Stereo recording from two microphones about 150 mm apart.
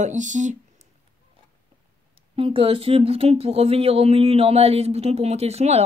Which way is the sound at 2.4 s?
40° right (ahead or behind).